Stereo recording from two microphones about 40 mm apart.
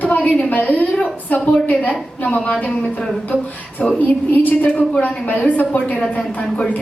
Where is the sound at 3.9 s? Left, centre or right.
Left.